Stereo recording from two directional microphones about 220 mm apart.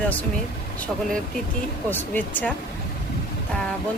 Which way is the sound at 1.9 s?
10° left (ahead or behind).